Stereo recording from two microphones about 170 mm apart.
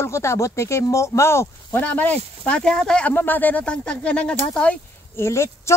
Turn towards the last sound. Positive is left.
turn(degrees=15)  # may be behind; listen again after turning